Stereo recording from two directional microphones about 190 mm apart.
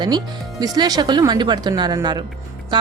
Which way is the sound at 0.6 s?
20° right (ahead or behind).